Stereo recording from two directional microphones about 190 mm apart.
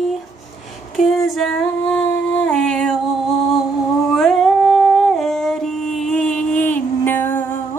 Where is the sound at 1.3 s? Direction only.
Centre (ahead or behind).